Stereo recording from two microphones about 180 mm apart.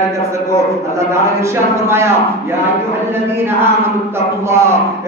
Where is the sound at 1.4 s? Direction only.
15° right (ahead or behind).